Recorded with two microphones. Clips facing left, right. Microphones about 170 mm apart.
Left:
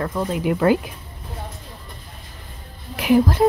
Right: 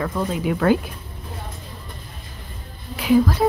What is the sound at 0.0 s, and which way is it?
Speech, 5° left (ahead or behind).